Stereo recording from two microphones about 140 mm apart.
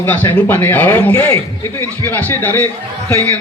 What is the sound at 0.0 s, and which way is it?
A man's voice, 15° left (ahead or behind).